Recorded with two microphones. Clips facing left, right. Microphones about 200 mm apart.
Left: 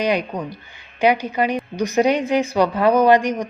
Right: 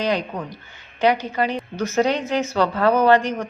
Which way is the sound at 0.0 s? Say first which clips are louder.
Left 2 dB; 15° left (ahead or behind).